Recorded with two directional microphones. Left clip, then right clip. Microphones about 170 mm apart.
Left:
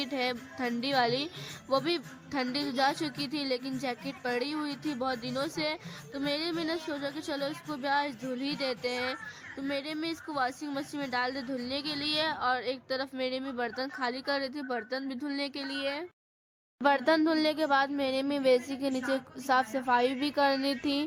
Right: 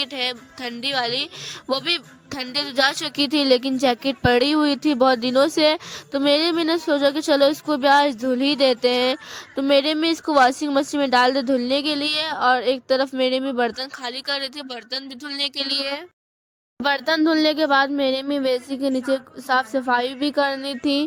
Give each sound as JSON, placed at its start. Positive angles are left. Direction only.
{"t": 0.0, "sound": "a woman's voice", "side_deg": -50}
{"t": 16.8, "sound": "speech", "side_deg": -25}